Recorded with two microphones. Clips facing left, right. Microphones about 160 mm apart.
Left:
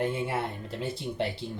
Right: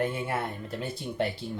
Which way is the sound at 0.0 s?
20° left (ahead or behind).